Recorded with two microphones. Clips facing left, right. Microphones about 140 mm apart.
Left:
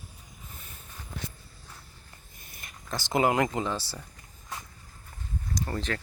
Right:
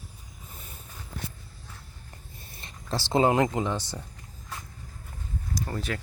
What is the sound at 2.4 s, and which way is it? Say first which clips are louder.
Speech: even; 30° right (ahead or behind).